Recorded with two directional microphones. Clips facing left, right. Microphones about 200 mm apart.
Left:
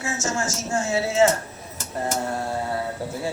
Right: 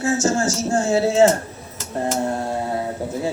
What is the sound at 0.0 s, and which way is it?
A man's voice, 35° right (ahead or behind).